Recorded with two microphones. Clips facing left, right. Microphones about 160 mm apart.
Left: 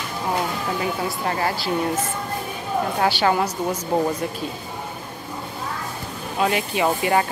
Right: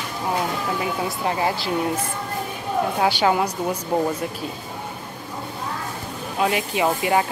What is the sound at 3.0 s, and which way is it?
Speech, 15° right (ahead or behind).